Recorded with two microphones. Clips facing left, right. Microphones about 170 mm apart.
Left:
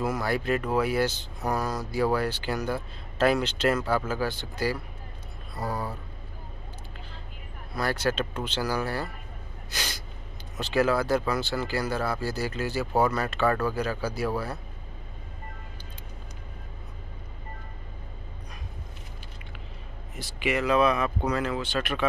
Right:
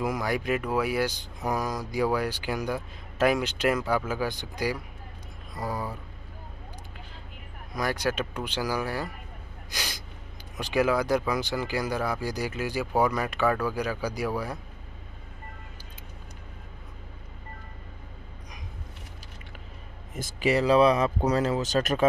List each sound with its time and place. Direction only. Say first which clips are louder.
0.0 s speech: left 1 dB; 15° right (ahead or behind)
7.7 s speech: left 1 dB; 15° right (ahead or behind)
9.7 s gasp: left 1 dB; 10° right (ahead or behind)
10.6 s speech: even; 15° right (ahead or behind)
20.2 s speech: right 3 dB; 45° right (ahead or behind)